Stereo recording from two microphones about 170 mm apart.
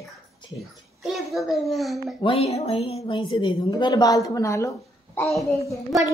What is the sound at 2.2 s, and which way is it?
A woman's voice, 35° left (ahead or behind).